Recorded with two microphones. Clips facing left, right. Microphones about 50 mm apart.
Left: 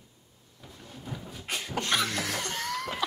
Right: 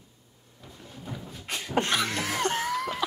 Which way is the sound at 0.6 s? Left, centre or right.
Centre.